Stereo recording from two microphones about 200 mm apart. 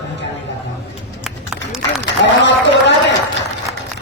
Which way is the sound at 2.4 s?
65° left (ahead or behind).